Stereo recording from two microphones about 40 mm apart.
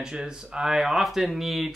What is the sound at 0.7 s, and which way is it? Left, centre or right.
Speech, centre.